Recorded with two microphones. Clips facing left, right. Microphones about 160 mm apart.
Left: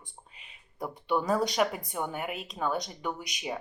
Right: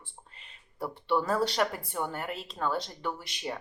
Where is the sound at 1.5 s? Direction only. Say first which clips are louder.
Left 1 dB; 5° left (ahead or behind).